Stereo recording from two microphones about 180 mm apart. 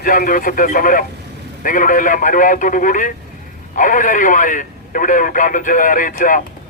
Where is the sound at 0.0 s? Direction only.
50° left (ahead or behind).